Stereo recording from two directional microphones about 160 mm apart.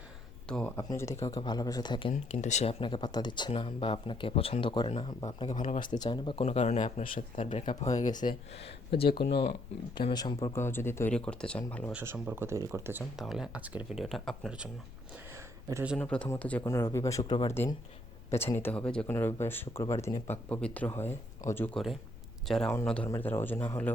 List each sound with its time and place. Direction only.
0.4 s speech: 5° left (ahead or behind)
0.8 s a man's voice: 20° left (ahead or behind)
2.1 s speech: 45° left (ahead or behind)
2.8 s speech: 30° left (ahead or behind); by 7.0 s 45° left (ahead or behind)
7.0 s speech: 60° left (ahead or behind)
7.3 s speech: 50° left (ahead or behind); by 11.9 s 10° left (ahead or behind)
11.9 s speech: 10° right (ahead or behind)
13.1 s speech: centre (ahead or behind)
15.7 s speech: 10° right (ahead or behind)
16.0 s speech: 10° left (ahead or behind)
23.0 s speech: 15° left (ahead or behind)